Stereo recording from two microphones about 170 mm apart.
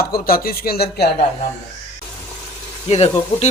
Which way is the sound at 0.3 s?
60° left (ahead or behind).